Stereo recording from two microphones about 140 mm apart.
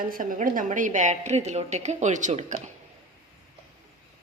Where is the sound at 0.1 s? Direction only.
75° right (ahead or behind); by 2.6 s 60° right (ahead or behind).